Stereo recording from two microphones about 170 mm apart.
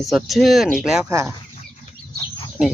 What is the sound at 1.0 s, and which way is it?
Speech, 15° right (ahead or behind).